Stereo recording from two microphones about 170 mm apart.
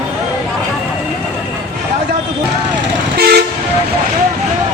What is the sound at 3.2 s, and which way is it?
Vehicle, 65° right (ahead or behind).